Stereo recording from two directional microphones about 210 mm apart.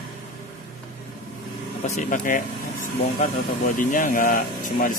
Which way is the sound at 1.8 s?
40° left (ahead or behind).